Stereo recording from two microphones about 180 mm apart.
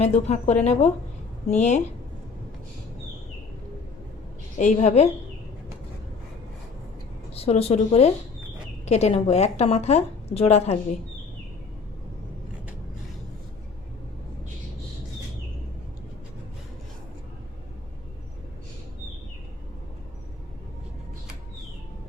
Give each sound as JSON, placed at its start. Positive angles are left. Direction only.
{"t": 0.0, "sound": "a woman's voice", "side_deg": 35}
{"t": 4.5, "sound": "a woman's voice", "side_deg": 40}
{"t": 7.3, "sound": "a woman's voice", "side_deg": 35}